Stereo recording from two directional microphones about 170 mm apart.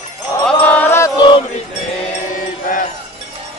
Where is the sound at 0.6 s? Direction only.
10° left (ahead or behind).